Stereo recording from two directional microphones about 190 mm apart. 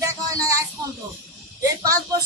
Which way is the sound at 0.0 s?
15° right (ahead or behind).